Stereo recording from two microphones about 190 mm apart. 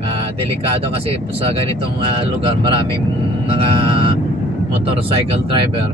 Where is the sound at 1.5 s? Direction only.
30° right (ahead or behind).